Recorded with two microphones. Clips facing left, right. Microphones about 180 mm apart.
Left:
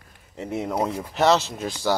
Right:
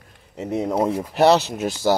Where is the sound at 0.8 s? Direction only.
30° right (ahead or behind).